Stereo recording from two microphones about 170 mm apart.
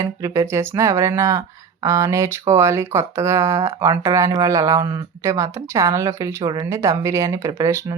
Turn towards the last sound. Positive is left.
turn(degrees=-20)  # may be behind; listen again after turning